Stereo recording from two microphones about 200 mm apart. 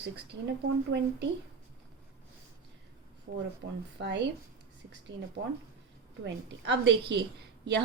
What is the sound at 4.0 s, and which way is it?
Speech, 60° right (ahead or behind).